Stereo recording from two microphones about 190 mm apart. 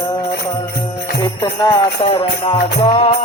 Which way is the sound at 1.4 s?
30° left (ahead or behind).